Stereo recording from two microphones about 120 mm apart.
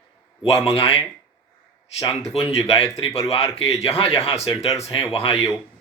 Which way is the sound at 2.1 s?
55° left (ahead or behind).